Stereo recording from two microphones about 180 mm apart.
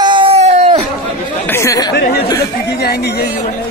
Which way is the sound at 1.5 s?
15° left (ahead or behind).